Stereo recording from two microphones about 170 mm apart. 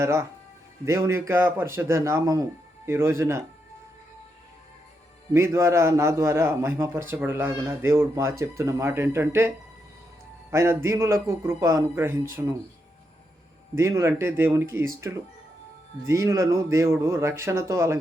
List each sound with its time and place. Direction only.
0.0 s a man's voice: 15° right (ahead or behind)
5.3 s a man's voice: 15° right (ahead or behind)
10.5 s a man's voice: 15° right (ahead or behind)
13.7 s a man's voice: 15° right (ahead or behind)